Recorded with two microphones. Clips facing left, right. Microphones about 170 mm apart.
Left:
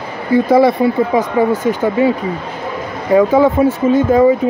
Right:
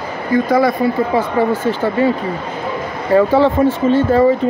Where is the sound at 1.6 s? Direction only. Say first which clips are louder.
Left 2 dB; 10° left (ahead or behind).